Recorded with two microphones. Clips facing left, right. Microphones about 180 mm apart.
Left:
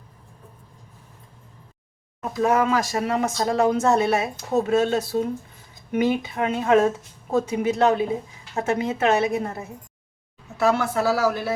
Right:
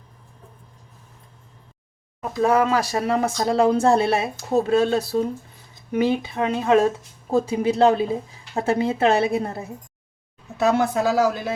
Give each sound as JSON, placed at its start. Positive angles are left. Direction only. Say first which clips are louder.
{"t": 2.4, "sound": "speech", "louder": "right 1 dB", "side_deg": -30}
{"t": 10.6, "sound": "speech", "louder": "right 2 dB", "side_deg": -20}